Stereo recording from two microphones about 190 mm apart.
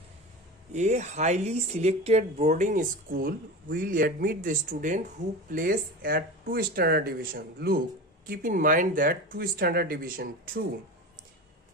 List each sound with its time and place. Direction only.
0.7 s speech: 35° right (ahead or behind)